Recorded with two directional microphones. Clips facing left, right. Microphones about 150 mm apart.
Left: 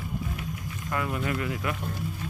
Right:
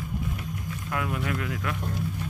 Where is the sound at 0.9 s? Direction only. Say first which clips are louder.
Left 1 dB; centre (ahead or behind).